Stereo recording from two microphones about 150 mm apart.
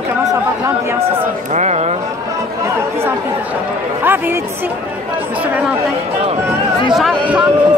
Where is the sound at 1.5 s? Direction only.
50° right (ahead or behind).